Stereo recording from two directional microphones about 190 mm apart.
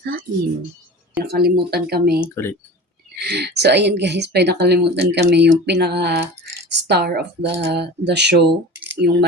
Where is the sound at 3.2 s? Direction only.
60° right (ahead or behind).